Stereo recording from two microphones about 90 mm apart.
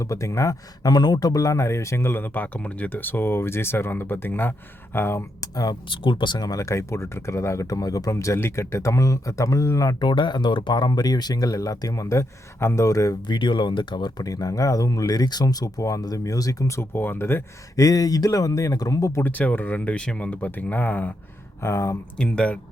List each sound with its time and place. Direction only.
0.0 s speech: 35° left (ahead or behind)
5.9 s speech: 65° left (ahead or behind)
6.6 s speech: 35° left (ahead or behind)
10.0 s speech: 60° left (ahead or behind); by 13.1 s 40° left (ahead or behind)
13.2 s speech: 60° left (ahead or behind)
14.3 s speech: 40° left (ahead or behind); by 17.4 s 25° left (ahead or behind)
17.7 s speech: 45° left (ahead or behind)
19.2 s speech: 20° left (ahead or behind)
21.6 s speech: 35° left (ahead or behind)
22.2 s speech: 10° left (ahead or behind)